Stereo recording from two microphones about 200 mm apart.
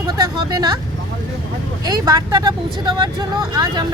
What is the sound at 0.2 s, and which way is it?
Vehicle, 20° right (ahead or behind).